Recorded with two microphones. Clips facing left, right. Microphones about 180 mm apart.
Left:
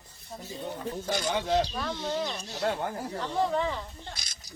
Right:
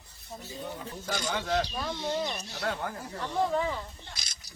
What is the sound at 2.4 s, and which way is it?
Speech, 20° left (ahead or behind).